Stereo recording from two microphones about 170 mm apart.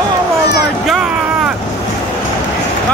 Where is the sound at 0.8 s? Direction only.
Centre (ahead or behind).